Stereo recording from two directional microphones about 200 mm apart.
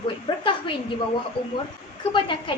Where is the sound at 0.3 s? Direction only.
20° left (ahead or behind).